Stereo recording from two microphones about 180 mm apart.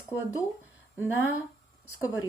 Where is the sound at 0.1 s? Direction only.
15° left (ahead or behind).